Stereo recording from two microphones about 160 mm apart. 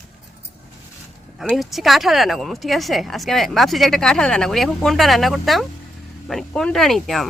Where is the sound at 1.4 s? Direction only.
Centre (ahead or behind).